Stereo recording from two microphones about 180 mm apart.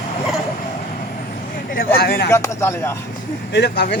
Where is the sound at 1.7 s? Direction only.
55° left (ahead or behind).